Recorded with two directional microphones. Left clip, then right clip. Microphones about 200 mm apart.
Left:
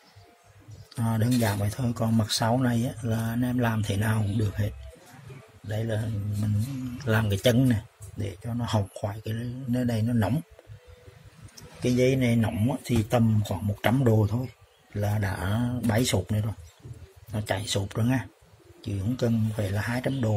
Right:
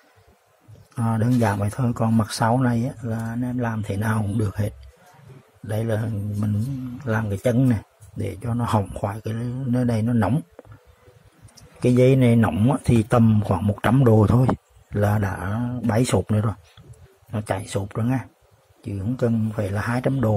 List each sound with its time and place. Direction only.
0.9 s speech: 5° right (ahead or behind)
7.1 s speech: 5° right (ahead or behind)
11.8 s a man's voice: 20° right (ahead or behind)
14.1 s a man's voice: 30° right (ahead or behind)
15.0 s speech: 15° right (ahead or behind)
15.3 s speech: centre (ahead or behind)
16.1 s speech: 15° right (ahead or behind)
17.3 s speech: 10° right (ahead or behind)